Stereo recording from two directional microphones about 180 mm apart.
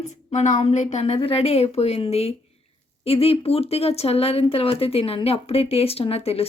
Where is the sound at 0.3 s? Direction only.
40° left (ahead or behind).